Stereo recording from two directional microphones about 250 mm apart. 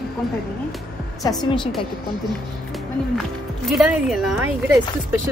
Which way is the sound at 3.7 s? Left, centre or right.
Centre.